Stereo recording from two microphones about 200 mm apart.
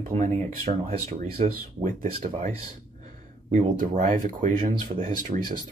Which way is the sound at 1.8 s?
45° right (ahead or behind).